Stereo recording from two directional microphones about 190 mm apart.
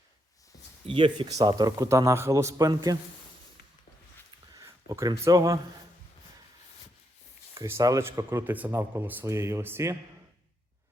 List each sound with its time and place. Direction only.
0.9 s speech: 25° right (ahead or behind)
4.5 s speech: 15° right (ahead or behind)
7.5 s speech: 15° right (ahead or behind)